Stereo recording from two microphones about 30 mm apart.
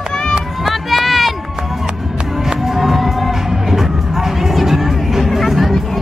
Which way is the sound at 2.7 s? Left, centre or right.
Centre.